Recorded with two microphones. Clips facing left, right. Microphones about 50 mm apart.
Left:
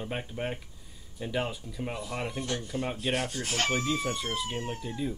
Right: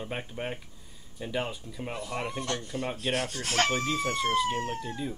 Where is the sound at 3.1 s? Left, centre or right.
Centre.